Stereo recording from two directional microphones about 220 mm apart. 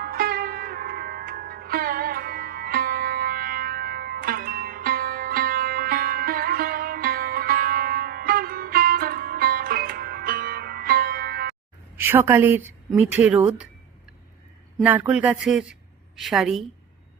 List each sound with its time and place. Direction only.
0.0 s music: 45° right (ahead or behind)
11.9 s a woman's voice: 10° right (ahead or behind)
14.8 s a woman's voice: 5° right (ahead or behind)